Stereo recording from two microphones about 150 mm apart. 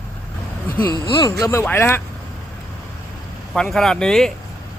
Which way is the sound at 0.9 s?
30° left (ahead or behind).